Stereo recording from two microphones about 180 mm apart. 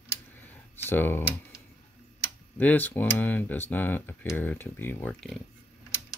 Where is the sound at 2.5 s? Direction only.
10° left (ahead or behind).